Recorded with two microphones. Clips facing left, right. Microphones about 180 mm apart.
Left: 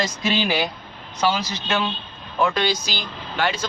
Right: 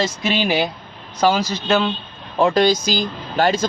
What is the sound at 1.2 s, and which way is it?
Speech, 40° right (ahead or behind).